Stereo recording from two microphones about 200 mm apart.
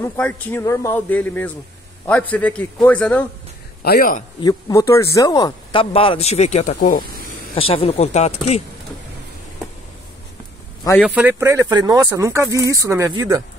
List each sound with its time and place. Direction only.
0.0 s a man's voice: 10° left (ahead or behind)
3.8 s speech: 45° left (ahead or behind)
4.4 s speech: 20° left (ahead or behind); by 7.1 s 45° left (ahead or behind)
7.5 s speech: 30° left (ahead or behind)
11.1 s speech: 10° right (ahead or behind)